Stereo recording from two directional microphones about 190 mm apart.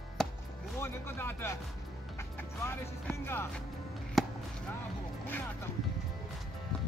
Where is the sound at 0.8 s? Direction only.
10° left (ahead or behind).